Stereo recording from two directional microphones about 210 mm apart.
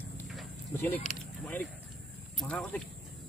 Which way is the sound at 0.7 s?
10° left (ahead or behind).